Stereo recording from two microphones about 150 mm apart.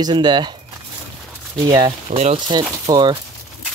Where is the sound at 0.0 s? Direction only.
30° right (ahead or behind).